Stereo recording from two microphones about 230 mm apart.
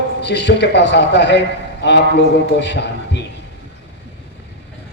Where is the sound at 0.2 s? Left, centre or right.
Left.